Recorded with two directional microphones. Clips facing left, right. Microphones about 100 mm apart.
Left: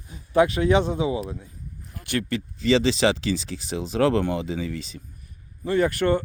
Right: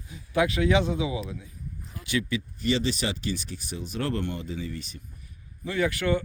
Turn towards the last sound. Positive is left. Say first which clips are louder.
# left 4 dB
turn(degrees=40)  # may be behind; listen again after turning